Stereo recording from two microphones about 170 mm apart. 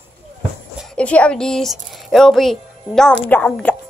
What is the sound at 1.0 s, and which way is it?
A woman's voice, 5° left (ahead or behind).